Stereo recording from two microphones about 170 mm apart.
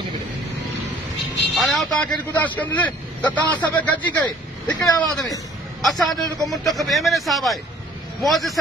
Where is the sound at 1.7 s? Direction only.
Centre (ahead or behind).